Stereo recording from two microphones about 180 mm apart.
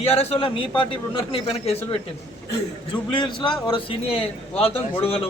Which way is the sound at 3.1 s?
25° left (ahead or behind).